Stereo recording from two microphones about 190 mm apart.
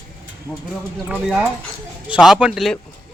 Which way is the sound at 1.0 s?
5° right (ahead or behind).